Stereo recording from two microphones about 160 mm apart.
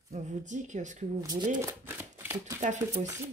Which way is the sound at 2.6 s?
50° right (ahead or behind).